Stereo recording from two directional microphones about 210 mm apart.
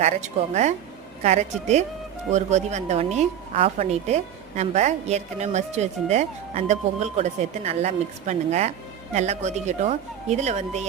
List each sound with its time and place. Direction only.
0.0 s a woman's voice: 35° right (ahead or behind)